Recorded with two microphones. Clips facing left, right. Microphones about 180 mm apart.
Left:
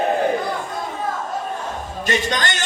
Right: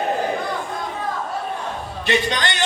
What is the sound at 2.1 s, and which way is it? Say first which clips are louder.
Speech: right 1 dB; 45° left (ahead or behind).